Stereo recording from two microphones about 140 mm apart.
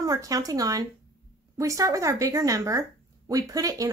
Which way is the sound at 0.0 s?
25° right (ahead or behind).